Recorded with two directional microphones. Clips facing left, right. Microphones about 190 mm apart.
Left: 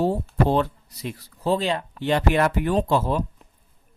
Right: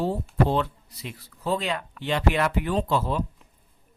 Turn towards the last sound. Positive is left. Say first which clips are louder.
# left 3 dB
turn(degrees=45)  # may be behind; listen again after turning